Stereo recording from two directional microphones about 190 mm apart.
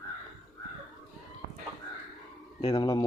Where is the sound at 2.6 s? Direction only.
25° left (ahead or behind).